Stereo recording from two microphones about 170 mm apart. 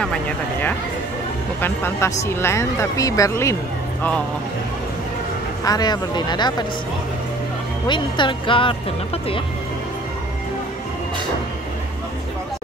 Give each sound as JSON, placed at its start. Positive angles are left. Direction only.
{"t": 0.0, "sound": "speech", "side_deg": 5}
{"t": 5.7, "sound": "speech", "side_deg": 25}
{"t": 7.9, "sound": "speech", "side_deg": 30}